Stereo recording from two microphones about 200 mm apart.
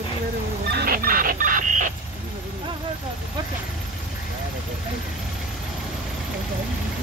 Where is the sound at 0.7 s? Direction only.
50° right (ahead or behind).